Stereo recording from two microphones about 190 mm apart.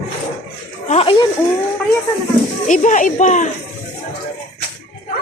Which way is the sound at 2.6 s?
40° left (ahead or behind).